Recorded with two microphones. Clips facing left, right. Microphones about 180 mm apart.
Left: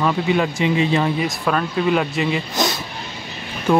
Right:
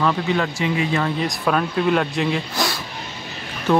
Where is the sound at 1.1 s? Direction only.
Centre (ahead or behind).